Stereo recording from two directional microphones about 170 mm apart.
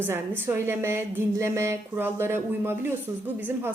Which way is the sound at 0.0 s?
15° right (ahead or behind).